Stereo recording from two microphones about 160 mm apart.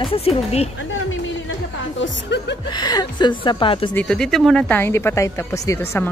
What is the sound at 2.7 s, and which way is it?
A woman's voice, 25° left (ahead or behind).